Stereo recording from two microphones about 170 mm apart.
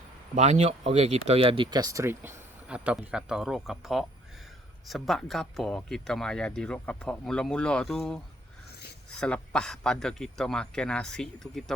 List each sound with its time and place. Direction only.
0.3 s speech: 40° right (ahead or behind); by 11.6 s 5° left (ahead or behind)